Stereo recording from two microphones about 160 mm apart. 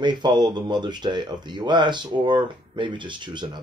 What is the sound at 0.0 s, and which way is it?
Speech, 30° right (ahead or behind).